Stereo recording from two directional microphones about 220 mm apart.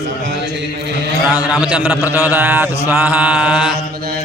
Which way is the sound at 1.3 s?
5° right (ahead or behind).